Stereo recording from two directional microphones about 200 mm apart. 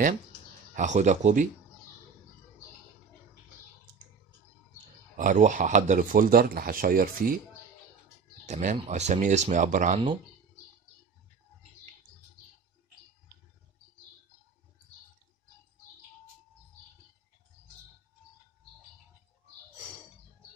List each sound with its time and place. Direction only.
0.7 s speech: 35° right (ahead or behind)
5.1 s speech: 40° right (ahead or behind)
8.5 s speech: 35° right (ahead or behind)